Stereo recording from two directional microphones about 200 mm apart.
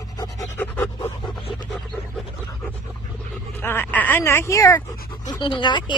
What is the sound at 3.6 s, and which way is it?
Speech, 10° left (ahead or behind).